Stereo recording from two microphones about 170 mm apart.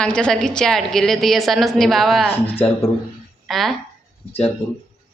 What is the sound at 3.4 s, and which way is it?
Speech, centre (ahead or behind).